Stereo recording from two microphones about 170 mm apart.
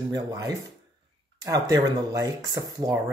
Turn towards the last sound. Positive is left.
turn(degrees=-20)  # may be behind; listen again after turning